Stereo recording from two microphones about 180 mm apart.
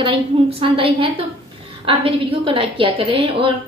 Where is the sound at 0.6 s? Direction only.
30° right (ahead or behind).